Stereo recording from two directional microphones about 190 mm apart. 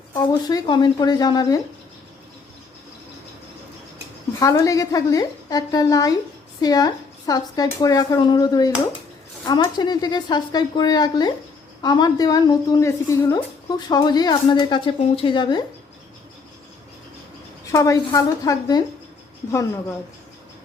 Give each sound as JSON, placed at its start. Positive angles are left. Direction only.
{"t": 0.4, "sound": "a woman's voice", "side_deg": 20}
{"t": 4.4, "sound": "a woman's voice", "side_deg": 15}
{"t": 17.7, "sound": "a woman's voice", "side_deg": 15}